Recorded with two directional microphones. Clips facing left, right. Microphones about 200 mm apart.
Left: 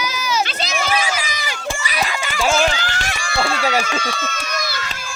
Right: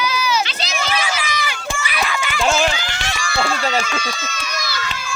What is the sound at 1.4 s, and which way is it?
Run, 40° left (ahead or behind).